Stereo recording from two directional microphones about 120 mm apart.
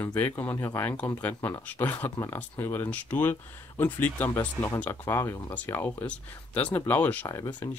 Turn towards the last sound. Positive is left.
turn(degrees=25)  # may be behind; listen again after turning